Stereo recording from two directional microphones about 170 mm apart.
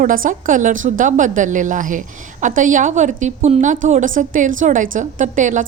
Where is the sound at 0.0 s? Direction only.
55° right (ahead or behind).